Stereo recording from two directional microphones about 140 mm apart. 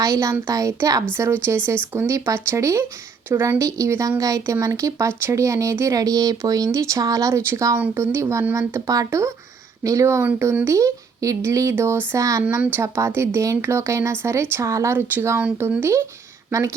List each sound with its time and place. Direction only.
0.0 s a woman's voice: 25° right (ahead or behind)